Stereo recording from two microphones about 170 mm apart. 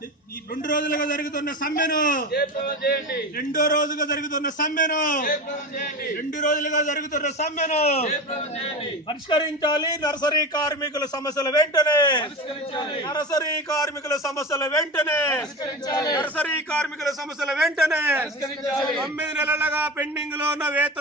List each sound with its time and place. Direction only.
0.5 s a man's voice: 50° left (ahead or behind); by 16.2 s 20° left (ahead or behind)
16.2 s a man's voice: 10° left (ahead or behind); by 20.9 s 10° right (ahead or behind)